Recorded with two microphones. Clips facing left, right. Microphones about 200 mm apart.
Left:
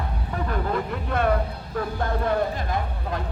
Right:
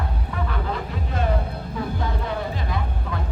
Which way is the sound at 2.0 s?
50° left (ahead or behind).